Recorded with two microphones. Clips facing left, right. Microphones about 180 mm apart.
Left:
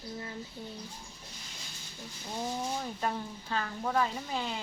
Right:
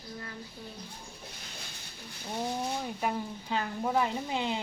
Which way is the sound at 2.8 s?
10° right (ahead or behind).